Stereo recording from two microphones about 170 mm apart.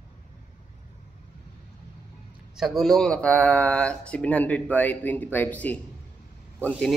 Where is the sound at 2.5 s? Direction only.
Centre (ahead or behind).